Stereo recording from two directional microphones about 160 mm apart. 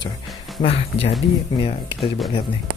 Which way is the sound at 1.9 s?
Centre (ahead or behind).